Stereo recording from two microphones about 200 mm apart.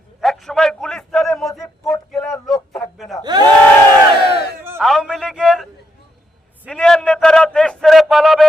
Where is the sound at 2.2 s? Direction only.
15° left (ahead or behind).